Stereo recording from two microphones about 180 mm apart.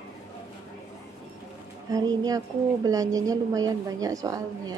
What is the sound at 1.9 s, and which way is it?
A woman's voice, 20° right (ahead or behind).